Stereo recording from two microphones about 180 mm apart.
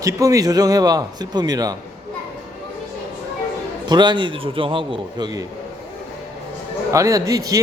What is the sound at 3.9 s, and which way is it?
A man's voice, 25° right (ahead or behind).